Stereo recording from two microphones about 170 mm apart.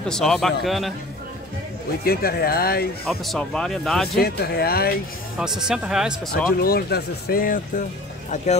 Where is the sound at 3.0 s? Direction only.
5° left (ahead or behind).